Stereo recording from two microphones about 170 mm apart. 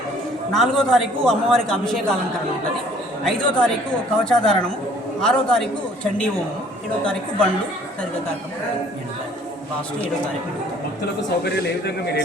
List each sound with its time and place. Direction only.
0.5 s a woman's voice: centre (ahead or behind)
3.2 s a woman's voice: 5° left (ahead or behind)
11.4 s a man's voice: 75° left (ahead or behind)